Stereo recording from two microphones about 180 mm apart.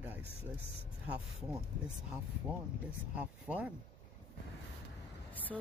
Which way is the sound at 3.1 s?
5° right (ahead or behind).